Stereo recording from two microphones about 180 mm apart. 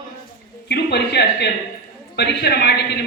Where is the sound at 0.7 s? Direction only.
65° left (ahead or behind).